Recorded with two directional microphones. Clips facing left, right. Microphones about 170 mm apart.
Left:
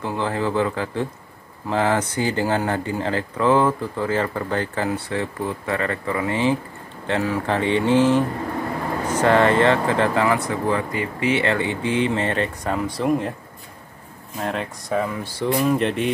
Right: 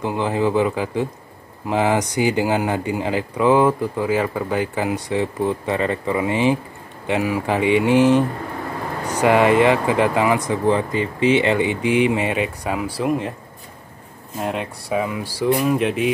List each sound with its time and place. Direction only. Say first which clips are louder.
0.0 s speech: right 3 dB; 15° right (ahead or behind)
14.4 s speech: right 1 dB; 10° right (ahead or behind)